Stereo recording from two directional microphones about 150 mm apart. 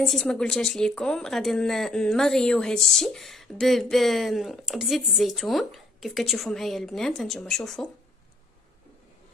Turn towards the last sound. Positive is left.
turn(degrees=5)  # may be behind; listen again after turning